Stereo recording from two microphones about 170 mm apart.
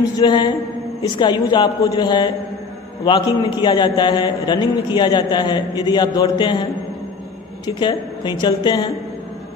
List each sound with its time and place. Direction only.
0.2 s a man's voice: 25° left (ahead or behind)